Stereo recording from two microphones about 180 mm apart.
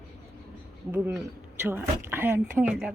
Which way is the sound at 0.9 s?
10° right (ahead or behind).